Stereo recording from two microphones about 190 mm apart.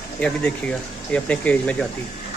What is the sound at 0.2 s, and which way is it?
Speech, 5° left (ahead or behind).